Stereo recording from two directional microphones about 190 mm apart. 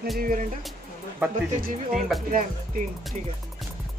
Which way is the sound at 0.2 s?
45° right (ahead or behind).